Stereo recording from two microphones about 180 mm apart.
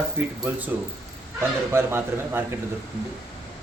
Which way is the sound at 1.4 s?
15° right (ahead or behind).